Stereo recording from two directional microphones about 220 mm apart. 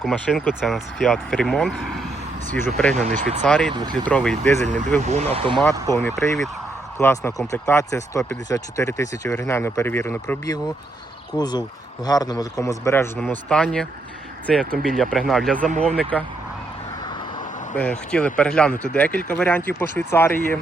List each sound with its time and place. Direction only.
0.0 s speech: centre (ahead or behind)
2.9 s speech: 30° right (ahead or behind)
3.4 s speech: 5° left (ahead or behind)
5.0 s speech: 30° right (ahead or behind)
5.9 s speech: 10° left (ahead or behind)
7.0 s speech: 10° left (ahead or behind)
17.7 s speech: 5° left (ahead or behind)